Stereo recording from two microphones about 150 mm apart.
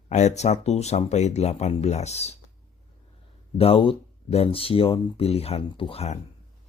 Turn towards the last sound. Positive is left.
turn(degrees=40)  # may be behind; listen again after turning